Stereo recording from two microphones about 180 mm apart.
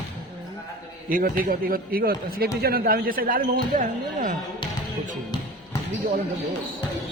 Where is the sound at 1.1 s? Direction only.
50° right (ahead or behind).